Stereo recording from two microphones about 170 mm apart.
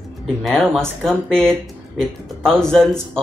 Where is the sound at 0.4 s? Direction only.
Centre (ahead or behind).